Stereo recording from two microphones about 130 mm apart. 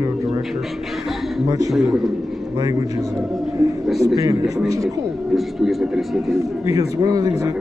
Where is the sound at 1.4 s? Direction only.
25° right (ahead or behind).